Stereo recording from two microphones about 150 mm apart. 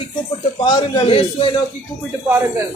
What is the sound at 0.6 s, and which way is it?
Speech, 35° left (ahead or behind).